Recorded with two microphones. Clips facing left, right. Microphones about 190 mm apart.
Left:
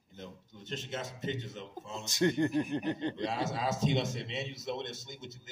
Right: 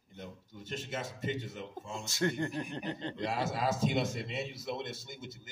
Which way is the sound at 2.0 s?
20° left (ahead or behind).